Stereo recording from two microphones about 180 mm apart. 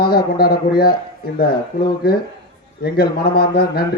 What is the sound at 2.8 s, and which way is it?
Speech, 60° left (ahead or behind).